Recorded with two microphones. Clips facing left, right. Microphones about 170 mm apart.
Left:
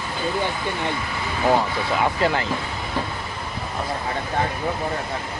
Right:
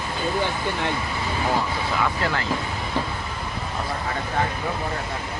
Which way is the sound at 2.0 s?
20° left (ahead or behind).